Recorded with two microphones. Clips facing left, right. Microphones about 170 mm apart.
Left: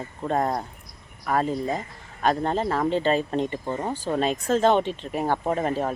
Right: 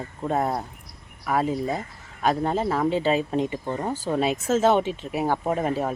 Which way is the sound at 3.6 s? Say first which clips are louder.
Even; 5° left (ahead or behind).